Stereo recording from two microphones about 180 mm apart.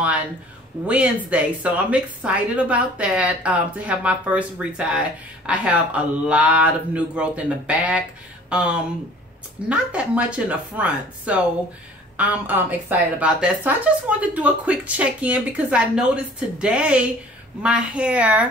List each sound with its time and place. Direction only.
0.8 s speech: 5° right (ahead or behind)